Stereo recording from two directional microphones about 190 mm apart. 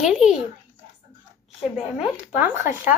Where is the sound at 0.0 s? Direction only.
5° right (ahead or behind).